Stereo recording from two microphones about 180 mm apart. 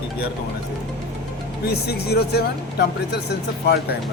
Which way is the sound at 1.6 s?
60° left (ahead or behind).